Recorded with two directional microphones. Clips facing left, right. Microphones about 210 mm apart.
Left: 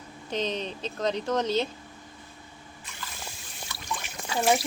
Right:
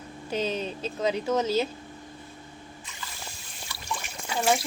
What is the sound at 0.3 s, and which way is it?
Speech, 5° right (ahead or behind).